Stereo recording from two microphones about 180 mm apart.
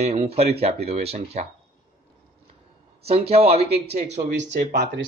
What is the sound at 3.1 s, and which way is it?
Speech, 35° right (ahead or behind).